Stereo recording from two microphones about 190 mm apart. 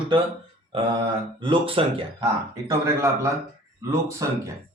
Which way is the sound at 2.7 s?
15° right (ahead or behind).